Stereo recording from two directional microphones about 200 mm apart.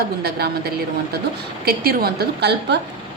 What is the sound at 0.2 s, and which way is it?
A woman's voice, 50° right (ahead or behind).